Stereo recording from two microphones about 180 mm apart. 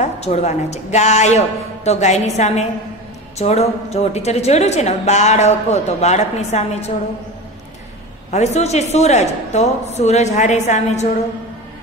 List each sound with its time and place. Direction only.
0.0 s a woman's voice: 40° left (ahead or behind)
8.3 s a woman's voice: 40° left (ahead or behind)